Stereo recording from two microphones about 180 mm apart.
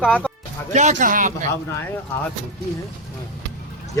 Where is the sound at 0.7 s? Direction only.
40° right (ahead or behind).